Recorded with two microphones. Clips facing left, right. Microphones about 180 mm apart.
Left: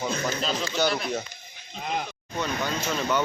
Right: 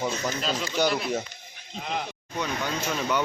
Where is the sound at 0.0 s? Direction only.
10° right (ahead or behind).